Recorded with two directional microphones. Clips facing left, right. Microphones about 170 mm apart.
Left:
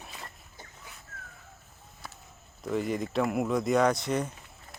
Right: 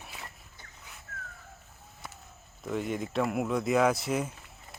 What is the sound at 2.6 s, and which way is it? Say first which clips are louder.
Speech: left 2 dB; centre (ahead or behind).